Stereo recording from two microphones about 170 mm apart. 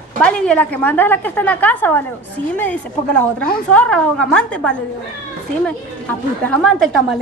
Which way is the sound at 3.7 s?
5° left (ahead or behind).